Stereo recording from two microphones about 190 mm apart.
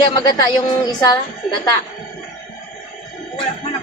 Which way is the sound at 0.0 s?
20° left (ahead or behind).